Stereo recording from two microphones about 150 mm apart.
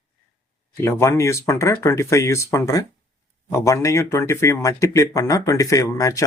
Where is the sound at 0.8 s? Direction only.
20° left (ahead or behind).